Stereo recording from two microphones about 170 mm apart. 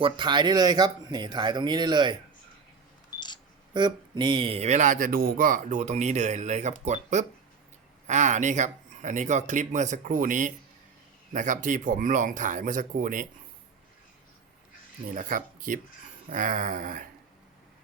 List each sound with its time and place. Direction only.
0.0 s speech: 25° right (ahead or behind)
3.8 s speech: 25° right (ahead or behind); by 13.2 s 50° right (ahead or behind)
15.1 s speech: 50° right (ahead or behind)